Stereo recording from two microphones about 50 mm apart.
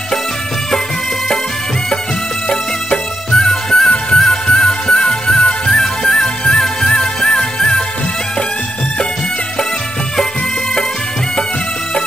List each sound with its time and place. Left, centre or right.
2.5 s music: centre